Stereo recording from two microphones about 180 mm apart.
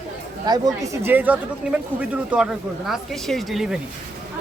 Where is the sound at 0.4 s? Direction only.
20° right (ahead or behind); by 3.8 s centre (ahead or behind).